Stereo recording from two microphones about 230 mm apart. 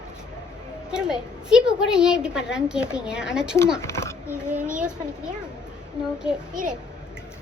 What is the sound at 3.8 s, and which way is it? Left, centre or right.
Speech, centre.